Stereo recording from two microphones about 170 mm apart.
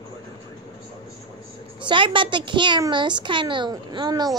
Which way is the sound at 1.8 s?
30° right (ahead or behind).